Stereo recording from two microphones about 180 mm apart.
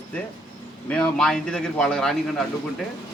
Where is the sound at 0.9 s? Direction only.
5° left (ahead or behind).